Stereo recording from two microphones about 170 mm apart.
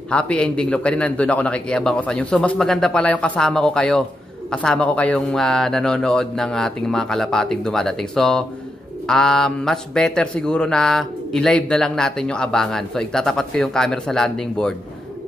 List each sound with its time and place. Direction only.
0.1 s a man's voice: 5° left (ahead or behind)